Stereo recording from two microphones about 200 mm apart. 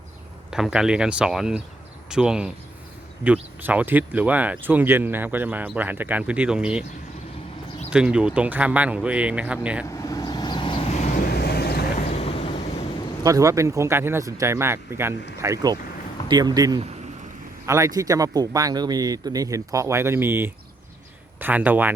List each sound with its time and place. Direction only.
0.5 s speech: 5° right (ahead or behind)
7.9 s speech: 5° right (ahead or behind)
9.8 s vehicle: 15° left (ahead or behind); by 12.0 s 50° left (ahead or behind)
12.0 s vehicle: 30° left (ahead or behind)
13.2 s speech: 15° right (ahead or behind)